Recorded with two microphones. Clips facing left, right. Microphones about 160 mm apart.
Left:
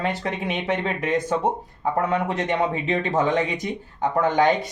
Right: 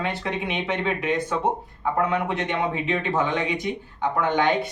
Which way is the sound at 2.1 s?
40° left (ahead or behind).